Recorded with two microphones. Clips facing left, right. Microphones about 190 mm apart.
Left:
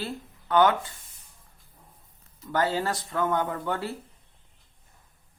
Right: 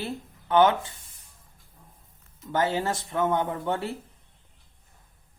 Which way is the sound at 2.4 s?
20° right (ahead or behind).